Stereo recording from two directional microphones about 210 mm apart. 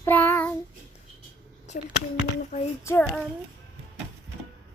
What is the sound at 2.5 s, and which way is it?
Speech, 35° left (ahead or behind).